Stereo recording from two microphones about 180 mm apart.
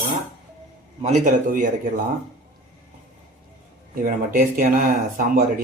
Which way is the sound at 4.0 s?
50° right (ahead or behind).